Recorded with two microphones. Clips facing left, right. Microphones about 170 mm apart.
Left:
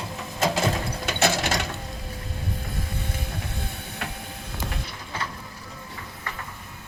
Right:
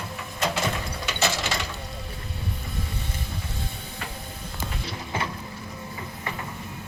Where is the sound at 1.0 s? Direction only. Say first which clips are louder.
Left 3 dB; 55° left (ahead or behind).